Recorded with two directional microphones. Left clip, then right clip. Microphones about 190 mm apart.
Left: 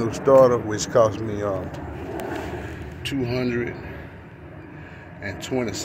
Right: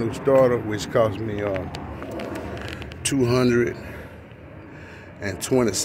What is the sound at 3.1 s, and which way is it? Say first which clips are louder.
Speech: right 6 dB; 45° right (ahead or behind).